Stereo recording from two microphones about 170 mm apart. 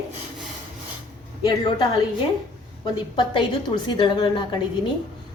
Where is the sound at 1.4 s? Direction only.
25° left (ahead or behind).